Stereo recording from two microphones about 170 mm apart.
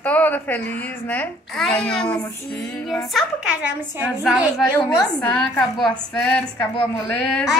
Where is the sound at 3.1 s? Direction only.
5° right (ahead or behind).